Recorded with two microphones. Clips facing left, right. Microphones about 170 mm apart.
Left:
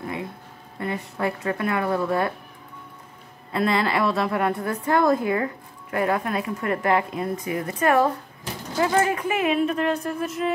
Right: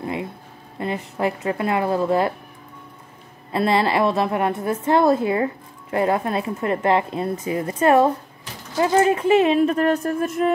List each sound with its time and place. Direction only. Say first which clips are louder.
0.7 s a woman's voice: right 3 dB; 20° right (ahead or behind)
3.5 s a woman's voice: right 3 dB; 25° right (ahead or behind); by 10.5 s 50° right (ahead or behind)